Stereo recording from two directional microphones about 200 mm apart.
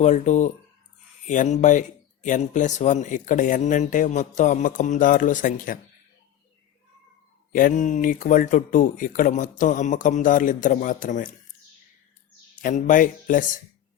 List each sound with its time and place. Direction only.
0.0 s speech: 35° left (ahead or behind)
7.5 s speech: 40° left (ahead or behind)
12.6 s speech: 40° left (ahead or behind)